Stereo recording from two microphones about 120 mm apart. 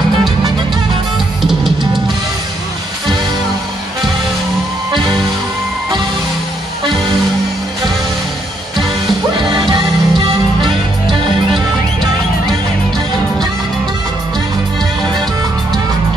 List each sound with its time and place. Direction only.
1.4 s music: centre (ahead or behind)
9.5 s music: 40° right (ahead or behind)